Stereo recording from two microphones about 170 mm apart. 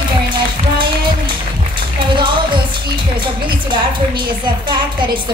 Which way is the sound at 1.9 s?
30° right (ahead or behind).